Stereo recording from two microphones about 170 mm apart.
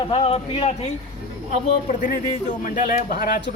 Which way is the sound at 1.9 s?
50° left (ahead or behind).